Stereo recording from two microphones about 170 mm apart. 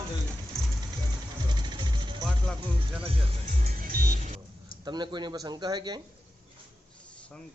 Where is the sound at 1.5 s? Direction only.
25° right (ahead or behind).